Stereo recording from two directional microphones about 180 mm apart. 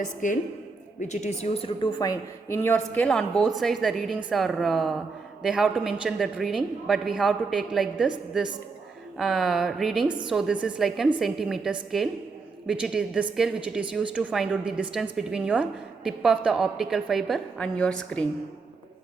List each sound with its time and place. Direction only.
0.0 s a woman's voice: 45° left (ahead or behind); by 2.6 s 20° left (ahead or behind)
2.6 s a woman's voice: 10° left (ahead or behind)
9.1 s a woman's voice: centre (ahead or behind)